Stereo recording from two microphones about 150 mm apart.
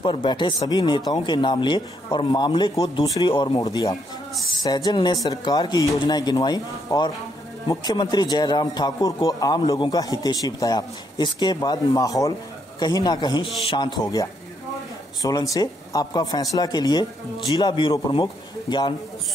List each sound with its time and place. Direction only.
0.0 s a man's voice: 30° left (ahead or behind)